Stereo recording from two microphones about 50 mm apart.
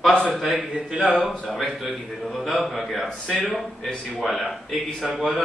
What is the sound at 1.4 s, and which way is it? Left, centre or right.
A man's voice, centre.